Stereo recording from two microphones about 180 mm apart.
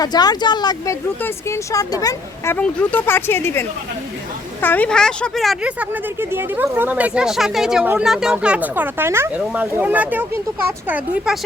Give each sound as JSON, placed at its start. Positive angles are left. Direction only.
{"t": 0.0, "sound": "speech", "side_deg": 20}